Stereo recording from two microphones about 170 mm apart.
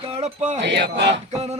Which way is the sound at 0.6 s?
90° right.